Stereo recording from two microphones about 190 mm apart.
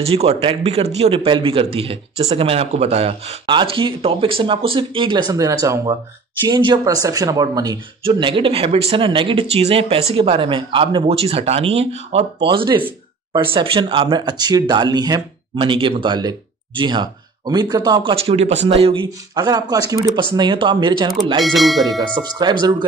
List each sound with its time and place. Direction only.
0.0 s speech: 30° right (ahead or behind)
21.4 s speech: centre (ahead or behind)
22.4 s speech: 25° right (ahead or behind)